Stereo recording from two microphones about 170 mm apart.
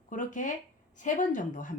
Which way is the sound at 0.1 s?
50° left (ahead or behind).